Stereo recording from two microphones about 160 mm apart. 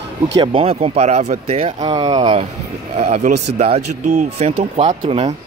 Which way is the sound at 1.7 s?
25° right (ahead or behind).